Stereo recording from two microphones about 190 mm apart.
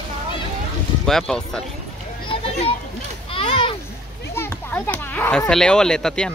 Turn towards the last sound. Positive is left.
turn(degrees=5)  # may be behind; listen again after turning